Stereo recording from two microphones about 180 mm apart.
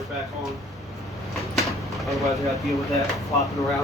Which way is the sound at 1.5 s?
Centre (ahead or behind).